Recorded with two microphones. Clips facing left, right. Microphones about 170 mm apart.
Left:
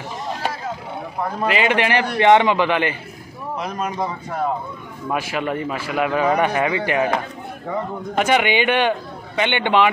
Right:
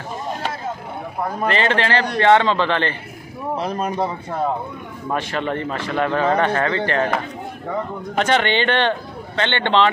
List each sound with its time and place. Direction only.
1.4 s a man's voice: 10° left (ahead or behind)
3.5 s speech: 30° right (ahead or behind)
5.1 s a man's voice: 10° left (ahead or behind)
8.2 s a man's voice: 10° left (ahead or behind)